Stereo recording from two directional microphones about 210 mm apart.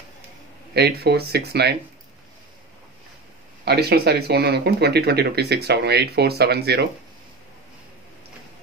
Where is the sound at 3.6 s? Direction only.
50° right (ahead or behind).